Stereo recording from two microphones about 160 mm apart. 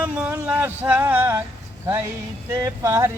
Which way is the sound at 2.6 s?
20° right (ahead or behind).